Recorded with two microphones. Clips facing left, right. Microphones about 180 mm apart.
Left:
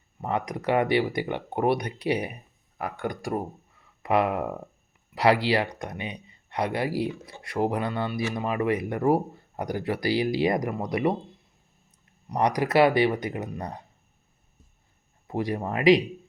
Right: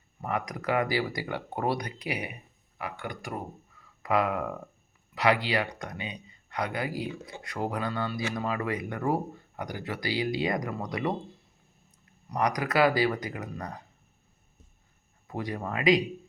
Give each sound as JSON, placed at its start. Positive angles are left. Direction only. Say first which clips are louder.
{"t": 0.2, "sound": "speech", "louder": "left 3 dB", "side_deg": 30}
{"t": 12.3, "sound": "speech", "louder": "left 4 dB", "side_deg": 30}
{"t": 15.3, "sound": "speech", "louder": "left 5 dB", "side_deg": 30}